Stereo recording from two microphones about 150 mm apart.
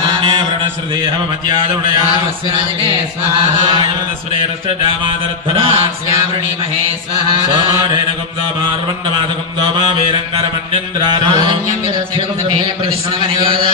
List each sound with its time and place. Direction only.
0.0 s a sound: 35° right (ahead or behind)
4.6 s mantra: 35° right (ahead or behind)
11.2 s mantra: 30° right (ahead or behind)
13.4 s mantra: 35° right (ahead or behind)